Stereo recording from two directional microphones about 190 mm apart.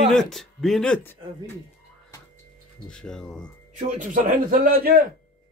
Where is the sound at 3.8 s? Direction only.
40° right (ahead or behind).